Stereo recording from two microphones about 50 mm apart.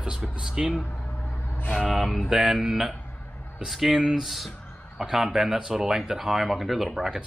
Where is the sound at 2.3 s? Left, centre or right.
Centre.